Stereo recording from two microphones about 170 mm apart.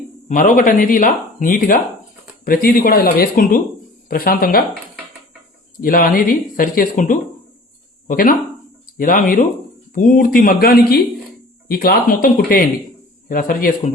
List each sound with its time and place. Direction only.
0.3 s speech: 50° left (ahead or behind)
5.8 s speech: 55° left (ahead or behind)